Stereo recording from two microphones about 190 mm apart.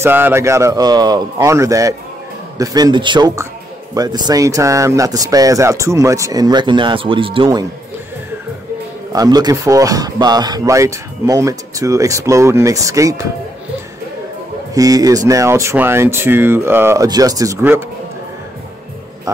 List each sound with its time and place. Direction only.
0.0 s a man's voice: 10° right (ahead or behind)
9.1 s a man's voice: 20° right (ahead or behind)
14.7 s a man's voice: 20° right (ahead or behind)
19.3 s a man's voice: 15° right (ahead or behind)